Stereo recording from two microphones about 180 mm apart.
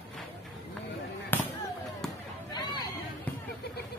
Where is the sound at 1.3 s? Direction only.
10° left (ahead or behind).